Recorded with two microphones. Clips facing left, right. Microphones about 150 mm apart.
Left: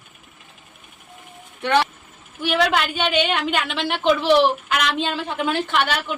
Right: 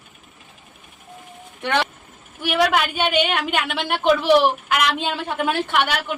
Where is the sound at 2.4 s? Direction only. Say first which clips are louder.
Right 1 dB; 10° right (ahead or behind).